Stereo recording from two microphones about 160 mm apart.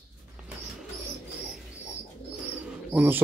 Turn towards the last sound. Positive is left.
turn(degrees=-10)  # may be behind; listen again after turning